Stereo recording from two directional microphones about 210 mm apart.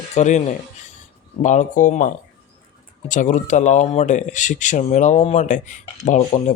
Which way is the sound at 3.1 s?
35° left (ahead or behind).